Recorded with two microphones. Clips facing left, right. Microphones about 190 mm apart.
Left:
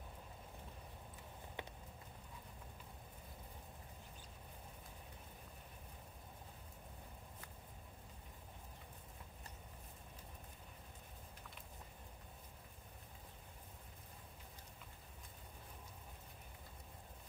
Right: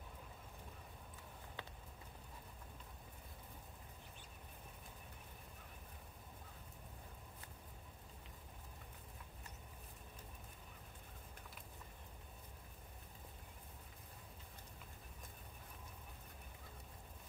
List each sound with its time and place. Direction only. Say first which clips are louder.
1.6 s clip-clop: left 4 dB; 20° left (ahead or behind)